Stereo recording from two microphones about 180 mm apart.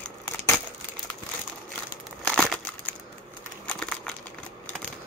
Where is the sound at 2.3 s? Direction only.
Centre (ahead or behind).